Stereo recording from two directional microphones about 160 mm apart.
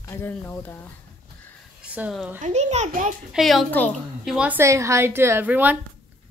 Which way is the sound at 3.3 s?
Centre (ahead or behind).